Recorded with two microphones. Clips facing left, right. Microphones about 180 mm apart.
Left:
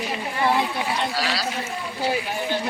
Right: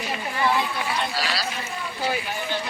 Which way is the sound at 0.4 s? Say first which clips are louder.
Left 2 dB; 20° left (ahead or behind).